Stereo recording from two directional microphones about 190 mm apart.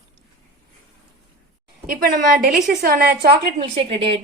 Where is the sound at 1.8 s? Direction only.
50° right (ahead or behind).